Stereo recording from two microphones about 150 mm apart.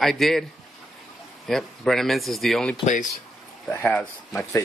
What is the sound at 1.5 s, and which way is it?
A man's voice, centre (ahead or behind).